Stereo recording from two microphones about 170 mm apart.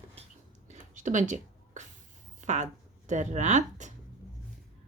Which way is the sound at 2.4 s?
45° right (ahead or behind).